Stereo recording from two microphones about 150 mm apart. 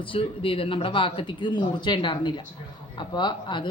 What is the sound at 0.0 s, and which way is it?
Speech, 35° left (ahead or behind).